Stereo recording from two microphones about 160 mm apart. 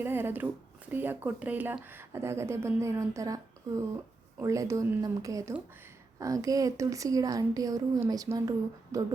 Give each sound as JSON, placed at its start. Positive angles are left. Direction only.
{"t": 0.0, "sound": "speech", "side_deg": -15}